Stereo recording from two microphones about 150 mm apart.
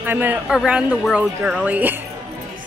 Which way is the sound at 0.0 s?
10° right (ahead or behind).